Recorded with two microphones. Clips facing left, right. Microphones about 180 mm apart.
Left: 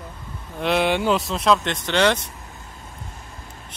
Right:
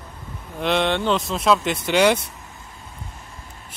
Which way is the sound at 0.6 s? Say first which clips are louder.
Left 1 dB; 5° left (ahead or behind).